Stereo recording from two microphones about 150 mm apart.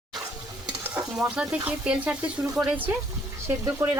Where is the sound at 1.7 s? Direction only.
10° right (ahead or behind).